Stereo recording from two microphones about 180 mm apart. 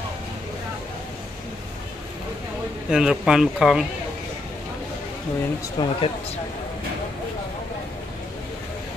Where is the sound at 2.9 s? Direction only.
5° right (ahead or behind).